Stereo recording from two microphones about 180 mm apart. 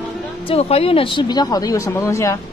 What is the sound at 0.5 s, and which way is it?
Speech, 35° left (ahead or behind).